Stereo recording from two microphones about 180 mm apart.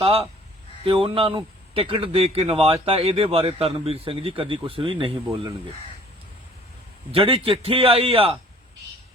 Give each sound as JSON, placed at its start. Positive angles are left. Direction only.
{"t": 0.9, "sound": "a man's voice", "side_deg": -30}
{"t": 7.1, "sound": "a man's voice", "side_deg": -30}